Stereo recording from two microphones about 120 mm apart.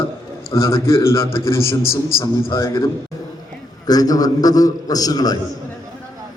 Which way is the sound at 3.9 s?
30° left (ahead or behind).